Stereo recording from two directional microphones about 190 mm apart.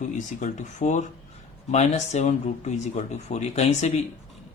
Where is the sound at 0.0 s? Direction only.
40° left (ahead or behind).